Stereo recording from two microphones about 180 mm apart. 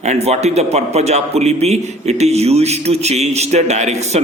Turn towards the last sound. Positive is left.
turn(degrees=-40)  # may be behind; listen again after turning